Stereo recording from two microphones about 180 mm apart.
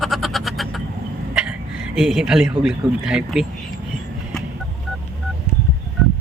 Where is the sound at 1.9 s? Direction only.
Centre (ahead or behind).